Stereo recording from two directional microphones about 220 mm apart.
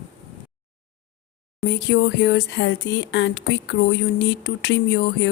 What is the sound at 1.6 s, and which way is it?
Speech, 50° left (ahead or behind).